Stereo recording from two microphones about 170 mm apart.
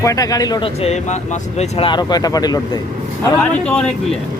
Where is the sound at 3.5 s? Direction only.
5° left (ahead or behind).